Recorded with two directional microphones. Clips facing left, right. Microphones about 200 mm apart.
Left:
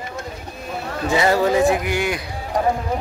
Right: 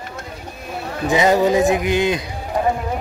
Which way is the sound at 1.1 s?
15° right (ahead or behind).